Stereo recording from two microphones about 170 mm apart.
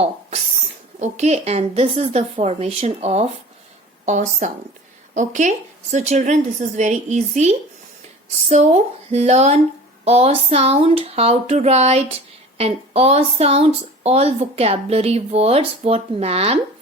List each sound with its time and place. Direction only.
0.9 s a woman's voice: 40° right (ahead or behind)